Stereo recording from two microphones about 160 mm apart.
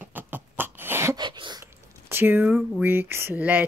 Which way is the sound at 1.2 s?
30° right (ahead or behind).